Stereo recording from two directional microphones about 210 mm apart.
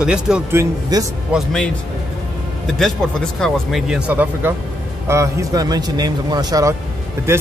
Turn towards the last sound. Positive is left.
turn(degrees=-10)  # may be behind; listen again after turning